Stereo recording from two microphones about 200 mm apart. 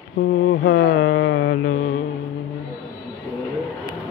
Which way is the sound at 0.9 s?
80° left.